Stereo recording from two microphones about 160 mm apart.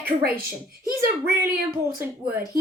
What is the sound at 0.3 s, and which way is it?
Speech, 65° right (ahead or behind).